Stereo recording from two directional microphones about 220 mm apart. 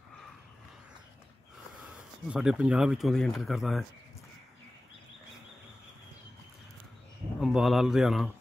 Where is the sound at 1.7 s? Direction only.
5° right (ahead or behind).